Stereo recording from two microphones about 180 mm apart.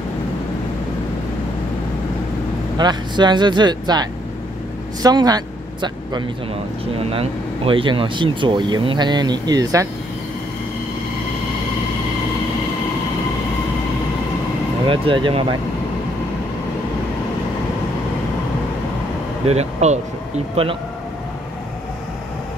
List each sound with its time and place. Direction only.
2.8 s speech: 25° right (ahead or behind)
14.9 s speech: 30° right (ahead or behind)
19.4 s speech: 35° right (ahead or behind)